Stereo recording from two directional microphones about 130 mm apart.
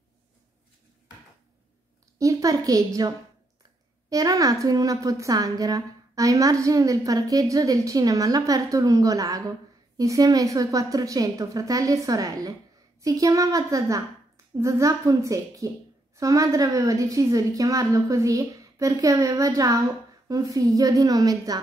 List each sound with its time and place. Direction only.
2.1 s a woman's voice: 25° right (ahead or behind)